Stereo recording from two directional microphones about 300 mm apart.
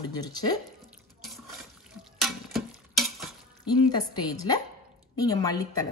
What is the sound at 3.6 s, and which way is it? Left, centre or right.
A woman's voice, centre.